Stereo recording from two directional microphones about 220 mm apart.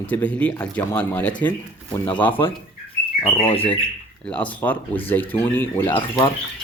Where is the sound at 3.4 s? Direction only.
25° left (ahead or behind).